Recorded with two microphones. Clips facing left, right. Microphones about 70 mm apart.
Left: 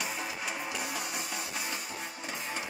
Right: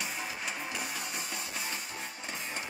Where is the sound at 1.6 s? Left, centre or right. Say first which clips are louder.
Left 1 dB; left.